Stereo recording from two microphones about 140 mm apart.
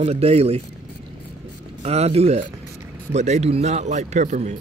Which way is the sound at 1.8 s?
50° right (ahead or behind).